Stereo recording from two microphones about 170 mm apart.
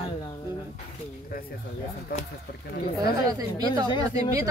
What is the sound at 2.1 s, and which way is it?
Speech, 60° left (ahead or behind).